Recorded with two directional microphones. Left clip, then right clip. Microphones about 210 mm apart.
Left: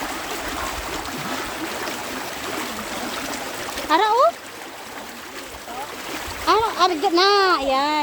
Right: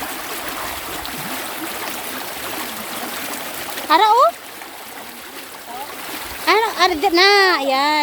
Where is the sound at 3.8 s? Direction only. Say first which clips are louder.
Right 4 dB; 20° right (ahead or behind).